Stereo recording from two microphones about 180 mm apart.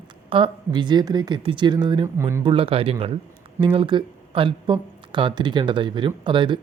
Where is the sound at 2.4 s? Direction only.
30° right (ahead or behind).